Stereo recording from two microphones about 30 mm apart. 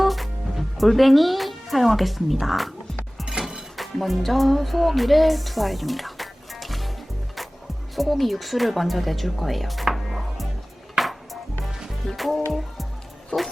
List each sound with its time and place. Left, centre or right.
0.0 s music: centre
0.9 s speech: centre
3.8 s music: centre
7.9 s speech: centre
9.9 s music: centre
13.3 s a sound: left